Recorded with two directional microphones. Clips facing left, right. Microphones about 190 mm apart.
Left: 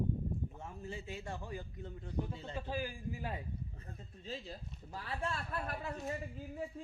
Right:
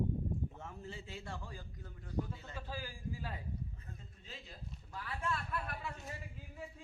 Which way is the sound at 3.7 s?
35° left (ahead or behind).